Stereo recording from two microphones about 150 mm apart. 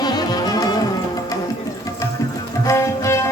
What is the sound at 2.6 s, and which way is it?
Music, 20° left (ahead or behind).